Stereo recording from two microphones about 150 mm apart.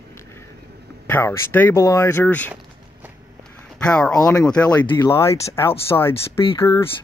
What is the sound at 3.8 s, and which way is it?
Speech, 5° left (ahead or behind).